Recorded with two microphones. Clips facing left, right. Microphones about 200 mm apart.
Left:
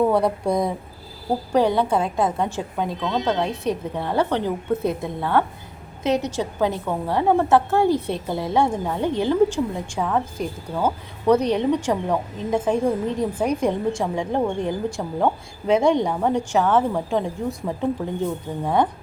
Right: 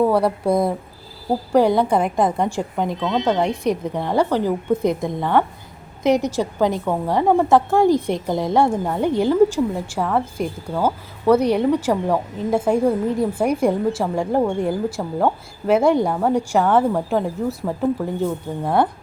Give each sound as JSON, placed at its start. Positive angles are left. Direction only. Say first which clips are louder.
{"t": 0.0, "sound": "a woman's voice", "louder": "right 2 dB", "side_deg": 0}